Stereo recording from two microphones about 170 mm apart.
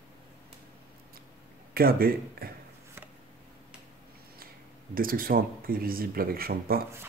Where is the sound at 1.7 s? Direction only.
60° right (ahead or behind).